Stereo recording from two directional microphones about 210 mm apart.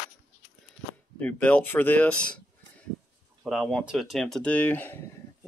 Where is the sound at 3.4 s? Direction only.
Centre (ahead or behind).